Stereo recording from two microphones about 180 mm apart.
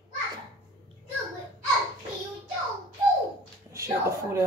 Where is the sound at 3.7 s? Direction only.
15° right (ahead or behind).